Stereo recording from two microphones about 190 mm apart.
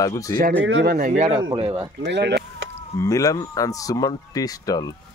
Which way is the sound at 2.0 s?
65° right (ahead or behind).